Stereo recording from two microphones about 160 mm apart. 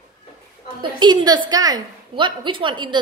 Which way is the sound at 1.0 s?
25° right (ahead or behind).